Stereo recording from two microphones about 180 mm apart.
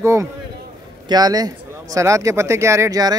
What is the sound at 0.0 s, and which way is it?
A man's voice, 15° right (ahead or behind).